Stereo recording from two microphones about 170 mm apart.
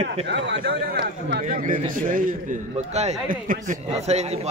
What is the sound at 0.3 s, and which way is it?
A man's voice, 85° right.